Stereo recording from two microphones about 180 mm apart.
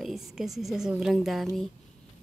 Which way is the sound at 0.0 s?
Centre (ahead or behind).